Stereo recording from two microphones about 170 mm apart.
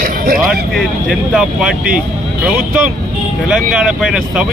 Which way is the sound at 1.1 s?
5° right (ahead or behind).